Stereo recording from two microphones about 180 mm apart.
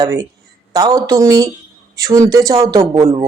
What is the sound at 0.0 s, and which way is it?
A woman's voice, 20° right (ahead or behind).